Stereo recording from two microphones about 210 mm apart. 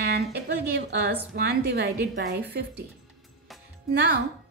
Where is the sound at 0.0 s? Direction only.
50° right (ahead or behind).